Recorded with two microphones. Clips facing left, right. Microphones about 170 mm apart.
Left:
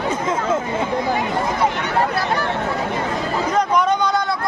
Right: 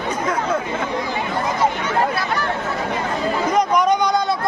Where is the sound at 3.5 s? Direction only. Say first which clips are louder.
Right 1 dB; 10° right (ahead or behind).